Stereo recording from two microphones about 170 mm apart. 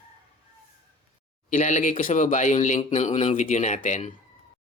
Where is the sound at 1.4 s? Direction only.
45° left (ahead or behind).